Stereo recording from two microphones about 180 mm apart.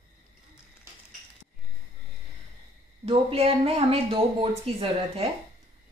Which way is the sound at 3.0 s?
35° right (ahead or behind).